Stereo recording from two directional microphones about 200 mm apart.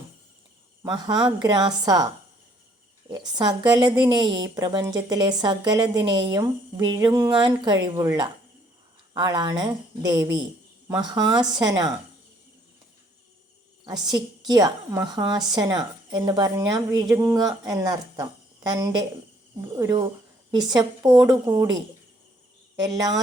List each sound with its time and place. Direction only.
0.8 s a woman's voice: 20° right (ahead or behind)
3.1 s a woman's voice: 20° right (ahead or behind)
13.8 s a woman's voice: 20° right (ahead or behind)